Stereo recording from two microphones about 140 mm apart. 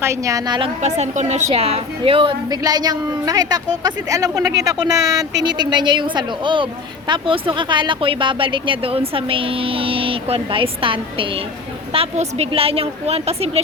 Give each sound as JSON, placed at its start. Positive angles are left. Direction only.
{"t": 0.0, "sound": "a woman's voice", "side_deg": -20}
{"t": 0.8, "sound": "a woman's voice", "side_deg": -50}
{"t": 2.5, "sound": "a woman's voice", "side_deg": -30}